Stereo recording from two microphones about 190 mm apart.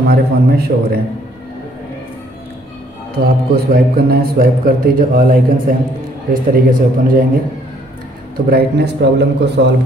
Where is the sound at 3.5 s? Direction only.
50° right (ahead or behind).